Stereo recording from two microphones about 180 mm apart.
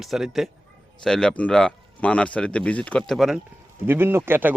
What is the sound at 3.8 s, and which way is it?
Speech, 10° right (ahead or behind).